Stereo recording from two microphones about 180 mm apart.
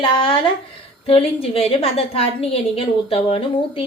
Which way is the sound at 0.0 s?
30° left (ahead or behind).